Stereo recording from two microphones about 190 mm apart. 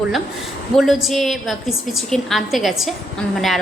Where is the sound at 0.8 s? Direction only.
Centre (ahead or behind).